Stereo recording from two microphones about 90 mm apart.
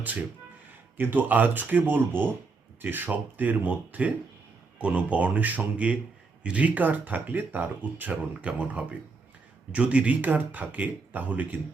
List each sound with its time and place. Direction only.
0.9 s speech: 20° right (ahead or behind)